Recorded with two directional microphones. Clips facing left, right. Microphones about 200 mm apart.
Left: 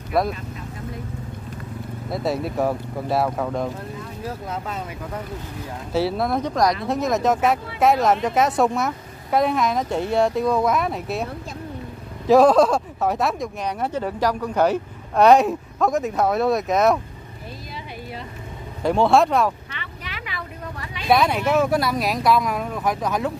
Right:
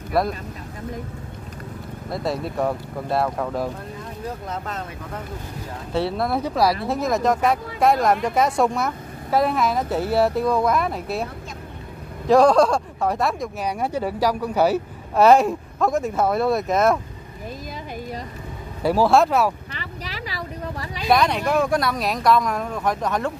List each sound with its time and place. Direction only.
0.1 s speech: centre (ahead or behind)
2.0 s speech: centre (ahead or behind)
5.9 s speech: centre (ahead or behind)
12.3 s speech: centre (ahead or behind)
18.8 s speech: 5° right (ahead or behind)
19.7 s vehicle: 35° right (ahead or behind)
21.1 s speech: 5° left (ahead or behind)